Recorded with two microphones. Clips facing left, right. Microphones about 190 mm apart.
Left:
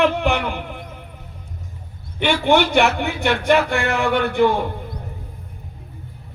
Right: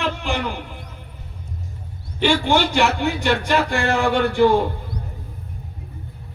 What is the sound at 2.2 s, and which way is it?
Speech, 60° left (ahead or behind).